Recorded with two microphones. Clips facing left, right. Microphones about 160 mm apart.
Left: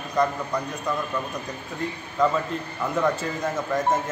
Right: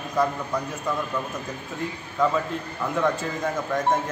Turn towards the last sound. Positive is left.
turn(degrees=0)  # may be behind; listen again after turning